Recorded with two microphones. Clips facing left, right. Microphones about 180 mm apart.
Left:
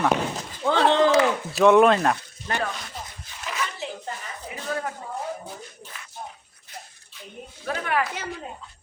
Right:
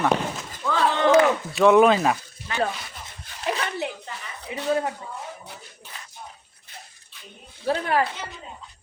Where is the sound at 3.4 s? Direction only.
35° right (ahead or behind).